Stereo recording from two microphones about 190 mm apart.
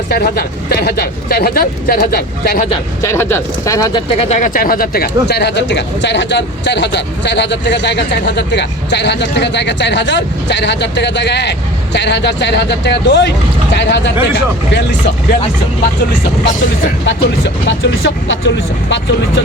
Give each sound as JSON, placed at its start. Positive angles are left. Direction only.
{"t": 0.1, "sound": "speech", "side_deg": 55}
{"t": 3.0, "sound": "speech", "side_deg": 15}
{"t": 4.2, "sound": "speech", "side_deg": 40}
{"t": 17.1, "sound": "speech", "side_deg": 75}